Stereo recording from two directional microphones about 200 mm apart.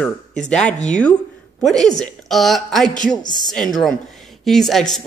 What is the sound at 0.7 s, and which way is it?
Speech, 35° left (ahead or behind).